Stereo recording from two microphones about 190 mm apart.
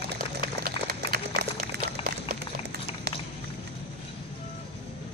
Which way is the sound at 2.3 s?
55° right (ahead or behind).